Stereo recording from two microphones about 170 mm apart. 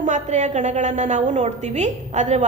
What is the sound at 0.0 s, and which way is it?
A woman's voice, 45° right (ahead or behind).